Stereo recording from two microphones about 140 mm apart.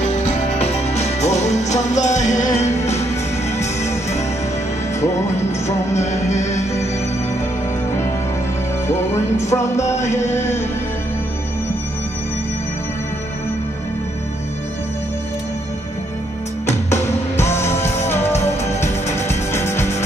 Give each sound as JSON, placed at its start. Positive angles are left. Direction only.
{"t": 0.0, "sound": "music", "side_deg": 55}
{"t": 5.0, "sound": "music", "side_deg": 20}
{"t": 6.3, "sound": "music", "side_deg": 55}
{"t": 8.8, "sound": "music", "side_deg": 20}
{"t": 16.9, "sound": "music", "side_deg": 20}